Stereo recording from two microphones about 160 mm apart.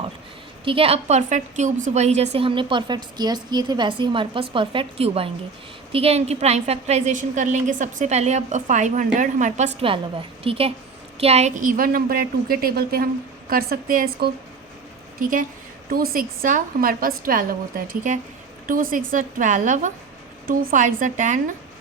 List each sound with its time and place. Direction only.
0.6 s a woman's voice: 35° right (ahead or behind); by 19.9 s 50° right (ahead or behind)
20.5 s a woman's voice: 65° right (ahead or behind)